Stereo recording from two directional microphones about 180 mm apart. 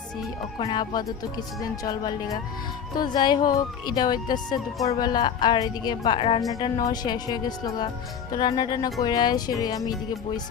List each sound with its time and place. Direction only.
0.6 s a woman's voice: 25° left (ahead or behind)
6.5 s speech: 20° left (ahead or behind)